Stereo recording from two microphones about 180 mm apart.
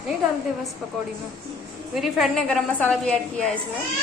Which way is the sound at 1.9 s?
Centre (ahead or behind).